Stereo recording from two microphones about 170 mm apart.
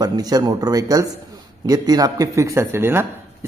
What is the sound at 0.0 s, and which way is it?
A man's voice, 20° right (ahead or behind).